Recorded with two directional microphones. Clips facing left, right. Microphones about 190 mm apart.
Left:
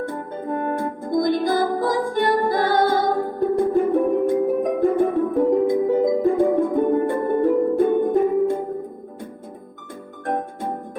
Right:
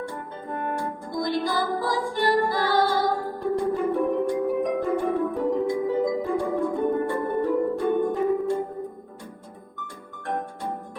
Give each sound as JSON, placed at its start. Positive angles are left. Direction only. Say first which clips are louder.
{"t": 0.0, "sound": "music", "louder": "left 6 dB", "side_deg": 50}
{"t": 9.8, "sound": "music", "louder": "left 6 dB", "side_deg": 50}